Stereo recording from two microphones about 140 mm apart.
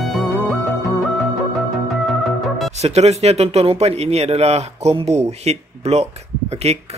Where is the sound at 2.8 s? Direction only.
50° right (ahead or behind).